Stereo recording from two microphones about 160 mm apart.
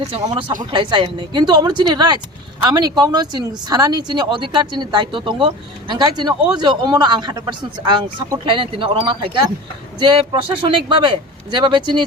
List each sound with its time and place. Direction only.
0.1 s speech: 35° right (ahead or behind)